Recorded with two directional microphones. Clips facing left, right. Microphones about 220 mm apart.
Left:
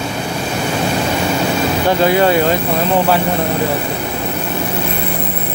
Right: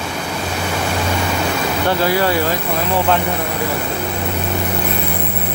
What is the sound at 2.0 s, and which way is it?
Speech, 20° left (ahead or behind).